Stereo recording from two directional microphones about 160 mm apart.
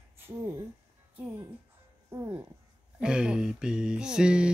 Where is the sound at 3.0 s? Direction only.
5° right (ahead or behind).